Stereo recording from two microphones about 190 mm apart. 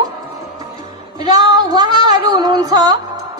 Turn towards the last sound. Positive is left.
turn(degrees=-20)  # may be behind; listen again after turning